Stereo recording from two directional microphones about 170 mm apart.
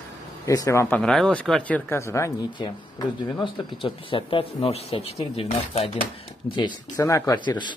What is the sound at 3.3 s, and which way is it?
Speech, 30° left (ahead or behind).